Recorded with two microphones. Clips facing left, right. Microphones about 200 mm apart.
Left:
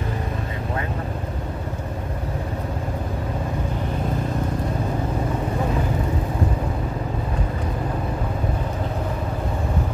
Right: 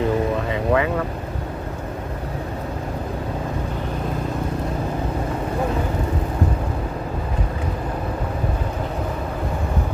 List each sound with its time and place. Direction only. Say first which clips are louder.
0.7 s speech: right 10 dB; 90° right